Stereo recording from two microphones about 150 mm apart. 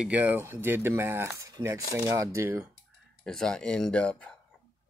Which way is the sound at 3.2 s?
5° left (ahead or behind).